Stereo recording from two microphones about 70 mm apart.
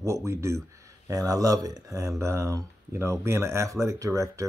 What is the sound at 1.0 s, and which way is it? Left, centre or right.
Speech, right.